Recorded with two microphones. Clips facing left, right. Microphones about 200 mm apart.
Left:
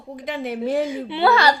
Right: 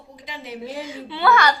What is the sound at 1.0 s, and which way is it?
Speech, 20° left (ahead or behind).